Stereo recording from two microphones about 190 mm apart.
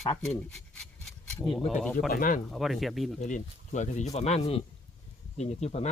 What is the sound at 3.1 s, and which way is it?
Speech, 40° left (ahead or behind).